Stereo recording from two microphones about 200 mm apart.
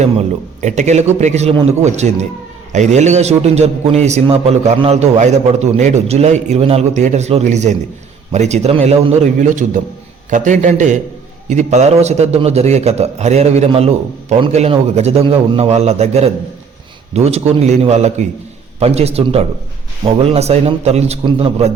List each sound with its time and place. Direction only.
0.6 s a man's voice: 35° right (ahead or behind)